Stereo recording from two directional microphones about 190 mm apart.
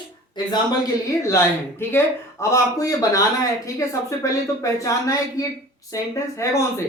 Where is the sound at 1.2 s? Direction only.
15° left (ahead or behind).